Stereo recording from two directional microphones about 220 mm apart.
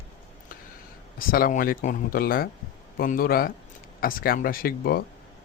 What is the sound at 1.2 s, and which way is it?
A man's voice, 40° left (ahead or behind).